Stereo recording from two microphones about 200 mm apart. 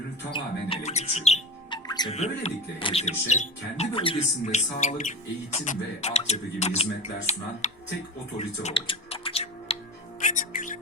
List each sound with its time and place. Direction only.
0.3 s speech: 25° left (ahead or behind)
8.4 s music: 30° left (ahead or behind)